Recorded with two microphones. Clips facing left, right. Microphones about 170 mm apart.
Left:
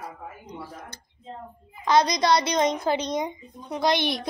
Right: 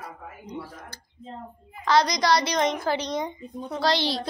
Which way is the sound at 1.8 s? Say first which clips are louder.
Left 1 dB; 20° left (ahead or behind).